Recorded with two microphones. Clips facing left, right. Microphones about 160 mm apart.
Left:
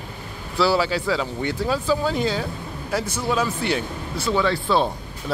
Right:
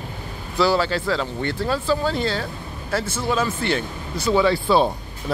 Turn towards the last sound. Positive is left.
turn(degrees=-5)  # may be behind; listen again after turning